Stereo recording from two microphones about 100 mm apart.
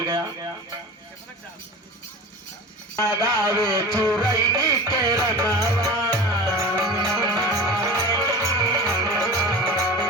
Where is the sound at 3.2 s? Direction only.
35° right (ahead or behind).